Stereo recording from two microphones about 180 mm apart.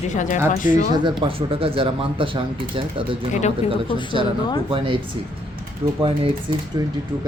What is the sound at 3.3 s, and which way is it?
Speech, 40° left (ahead or behind).